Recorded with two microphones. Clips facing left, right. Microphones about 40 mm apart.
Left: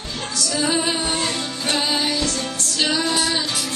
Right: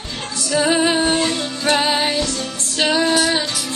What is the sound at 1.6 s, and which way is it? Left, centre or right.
Music, right.